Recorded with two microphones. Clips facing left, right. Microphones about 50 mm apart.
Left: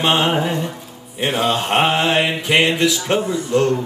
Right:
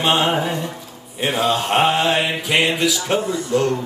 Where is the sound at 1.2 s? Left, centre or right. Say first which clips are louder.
Left 1 dB; centre.